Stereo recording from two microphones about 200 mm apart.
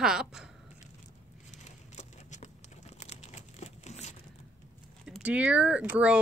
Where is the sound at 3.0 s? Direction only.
35° left (ahead or behind).